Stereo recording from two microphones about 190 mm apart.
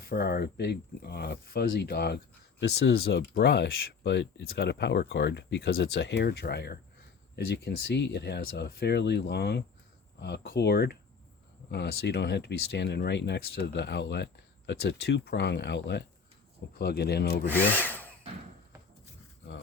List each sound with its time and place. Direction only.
0.1 s speech: 55° left (ahead or behind)
17.5 s sawing: 10° left (ahead or behind)